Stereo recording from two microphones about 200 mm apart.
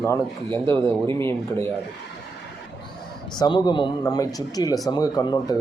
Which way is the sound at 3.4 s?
20° left (ahead or behind).